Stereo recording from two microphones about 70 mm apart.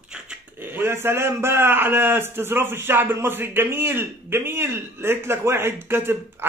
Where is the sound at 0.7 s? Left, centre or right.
Right.